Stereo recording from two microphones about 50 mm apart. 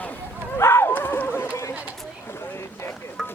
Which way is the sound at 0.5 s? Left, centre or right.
Left.